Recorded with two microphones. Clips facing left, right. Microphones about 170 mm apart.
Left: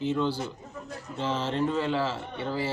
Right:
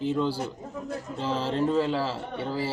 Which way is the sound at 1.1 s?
35° right (ahead or behind).